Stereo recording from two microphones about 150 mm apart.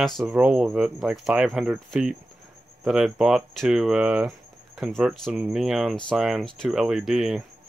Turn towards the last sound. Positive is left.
turn(degrees=-5)  # may be behind; listen again after turning